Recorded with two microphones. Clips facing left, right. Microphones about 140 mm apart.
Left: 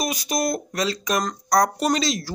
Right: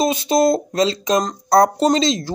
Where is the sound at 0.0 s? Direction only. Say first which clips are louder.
Right 9 dB; 25° right (ahead or behind).